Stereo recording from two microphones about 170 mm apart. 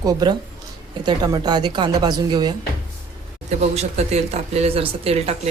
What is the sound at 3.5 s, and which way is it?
Speech, 40° right (ahead or behind).